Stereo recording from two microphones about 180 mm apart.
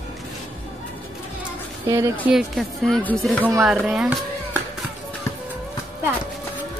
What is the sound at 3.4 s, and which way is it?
Speech, 5° right (ahead or behind).